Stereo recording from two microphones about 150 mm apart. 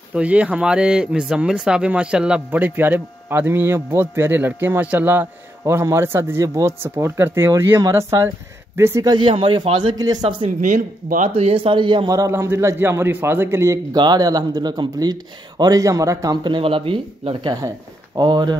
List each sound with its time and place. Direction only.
0.1 s speech: 10° right (ahead or behind)
9.1 s a man's voice: 35° right (ahead or behind)
10.6 s speech: 55° right (ahead or behind)
11.2 s a man's voice: 40° right (ahead or behind)